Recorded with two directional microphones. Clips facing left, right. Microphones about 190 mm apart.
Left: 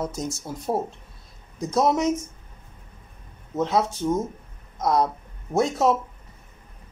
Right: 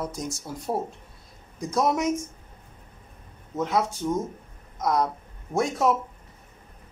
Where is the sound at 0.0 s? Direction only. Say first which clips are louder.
Left 3 dB; 25° left (ahead or behind).